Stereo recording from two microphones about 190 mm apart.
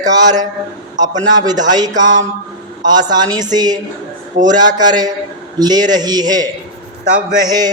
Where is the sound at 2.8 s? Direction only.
20° right (ahead or behind).